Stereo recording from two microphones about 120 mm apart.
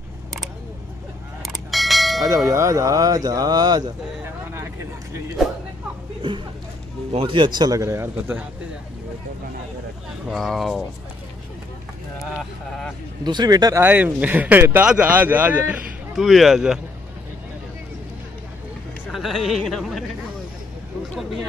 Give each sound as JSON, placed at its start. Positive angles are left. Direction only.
{"t": 1.4, "sound": "bell", "side_deg": 0}
{"t": 2.5, "sound": "speech", "side_deg": -25}
{"t": 5.4, "sound": "speech", "side_deg": -5}
{"t": 7.1, "sound": "speech", "side_deg": -50}
{"t": 10.3, "sound": "speech", "side_deg": 0}
{"t": 13.2, "sound": "speech", "side_deg": -35}
{"t": 13.7, "sound": "speech", "side_deg": -15}
{"t": 16.2, "sound": "speech", "side_deg": 0}
{"t": 19.1, "sound": "speech", "side_deg": 0}